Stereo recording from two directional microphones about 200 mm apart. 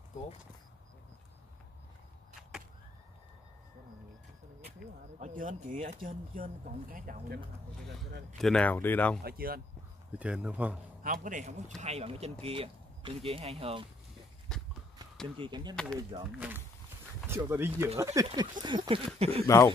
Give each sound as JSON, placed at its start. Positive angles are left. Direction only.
{"t": 5.2, "sound": "speech", "side_deg": -40}
{"t": 8.4, "sound": "speech", "side_deg": 5}
{"t": 9.2, "sound": "speech", "side_deg": -50}
{"t": 10.1, "sound": "speech", "side_deg": -5}
{"t": 11.0, "sound": "a man's voice", "side_deg": -40}
{"t": 14.5, "sound": "a sound", "side_deg": 0}
{"t": 15.3, "sound": "speech", "side_deg": -25}
{"t": 15.7, "sound": "speech", "side_deg": 5}
{"t": 16.3, "sound": "speech", "side_deg": -10}
{"t": 19.4, "sound": "speech", "side_deg": 15}